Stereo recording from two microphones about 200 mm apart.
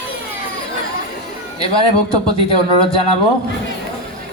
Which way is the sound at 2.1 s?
30° left (ahead or behind).